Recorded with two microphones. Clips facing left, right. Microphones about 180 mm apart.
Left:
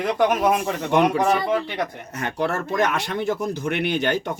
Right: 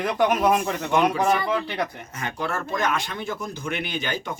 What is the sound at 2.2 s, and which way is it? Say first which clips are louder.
Speech: left 4 dB; 65° left (ahead or behind).